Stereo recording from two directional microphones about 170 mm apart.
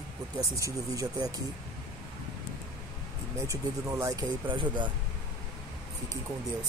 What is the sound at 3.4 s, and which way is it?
Speech, 15° right (ahead or behind).